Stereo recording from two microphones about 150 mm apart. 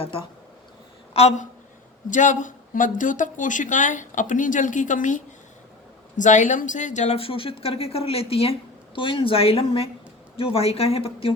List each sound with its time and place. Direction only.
1.1 s speech: 45° left (ahead or behind)
2.0 s speech: 55° left (ahead or behind)
7.2 s speech: 35° left (ahead or behind)